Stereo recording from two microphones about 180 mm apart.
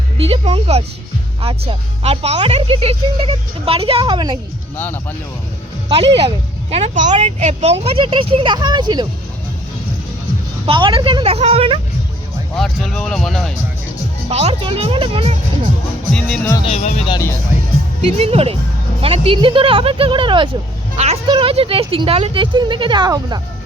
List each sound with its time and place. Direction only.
0.2 s speech: 35° right (ahead or behind)
5.9 s speech: 30° right (ahead or behind)
10.7 s speech: 30° right (ahead or behind)
12.5 s speech: centre (ahead or behind)
14.3 s speech: 35° right (ahead or behind)
16.1 s speech: 5° left (ahead or behind)
16.6 s speech: 40° left (ahead or behind)
17.1 s speech: 15° left (ahead or behind)
18.2 s speech: 35° right (ahead or behind)